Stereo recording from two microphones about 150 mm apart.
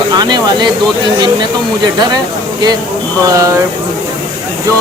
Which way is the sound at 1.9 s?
30° right (ahead or behind).